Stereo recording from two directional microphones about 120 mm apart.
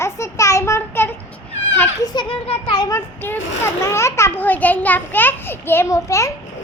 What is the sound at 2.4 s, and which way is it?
Speech, 55° left (ahead or behind).